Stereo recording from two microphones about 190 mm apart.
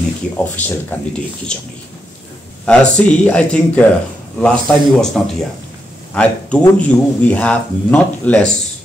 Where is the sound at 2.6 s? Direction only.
5° left (ahead or behind).